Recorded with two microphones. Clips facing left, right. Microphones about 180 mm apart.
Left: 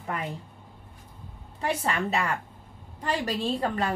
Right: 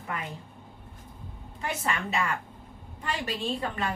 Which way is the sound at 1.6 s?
35° left (ahead or behind).